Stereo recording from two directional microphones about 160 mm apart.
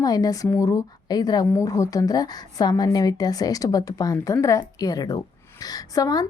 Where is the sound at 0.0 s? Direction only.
25° left (ahead or behind).